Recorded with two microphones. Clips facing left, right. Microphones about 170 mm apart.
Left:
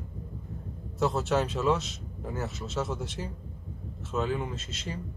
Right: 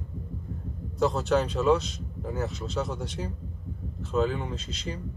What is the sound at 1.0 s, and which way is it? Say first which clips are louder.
Speech: right 2 dB; centre (ahead or behind).